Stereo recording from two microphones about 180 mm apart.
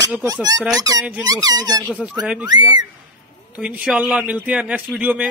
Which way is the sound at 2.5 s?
20° right (ahead or behind).